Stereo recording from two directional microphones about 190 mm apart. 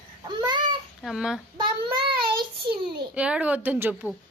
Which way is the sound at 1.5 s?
25° right (ahead or behind).